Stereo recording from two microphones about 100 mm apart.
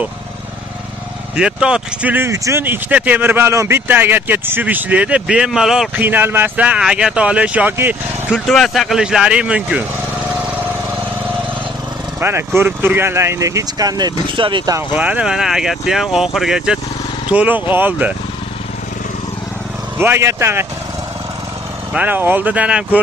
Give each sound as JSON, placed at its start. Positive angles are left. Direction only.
{"t": 1.3, "sound": "speech", "side_deg": -10}
{"t": 2.2, "sound": "speech", "side_deg": -30}
{"t": 2.6, "sound": "speech", "side_deg": -20}
{"t": 5.9, "sound": "speech", "side_deg": -20}
{"t": 8.5, "sound": "speech", "side_deg": 5}
{"t": 12.2, "sound": "speech", "side_deg": -25}
{"t": 15.0, "sound": "speech", "side_deg": -15}
{"t": 20.0, "sound": "speech", "side_deg": -25}
{"t": 21.9, "sound": "speech", "side_deg": -15}